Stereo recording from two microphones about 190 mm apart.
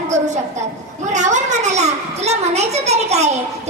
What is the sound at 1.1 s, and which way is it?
A child's voice, 40° right (ahead or behind).